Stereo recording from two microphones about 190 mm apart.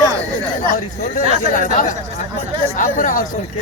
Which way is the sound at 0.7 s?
45° left (ahead or behind).